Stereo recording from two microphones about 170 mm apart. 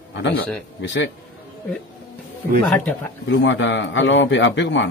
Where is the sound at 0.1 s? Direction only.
90° left.